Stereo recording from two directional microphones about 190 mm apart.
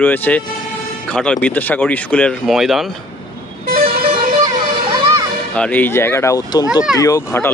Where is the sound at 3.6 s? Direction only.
50° right (ahead or behind).